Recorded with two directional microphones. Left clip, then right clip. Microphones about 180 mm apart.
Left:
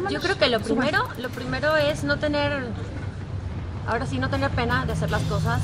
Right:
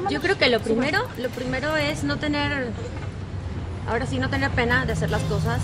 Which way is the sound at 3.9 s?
5° right (ahead or behind).